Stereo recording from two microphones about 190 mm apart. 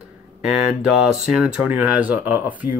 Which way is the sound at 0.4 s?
5° right (ahead or behind).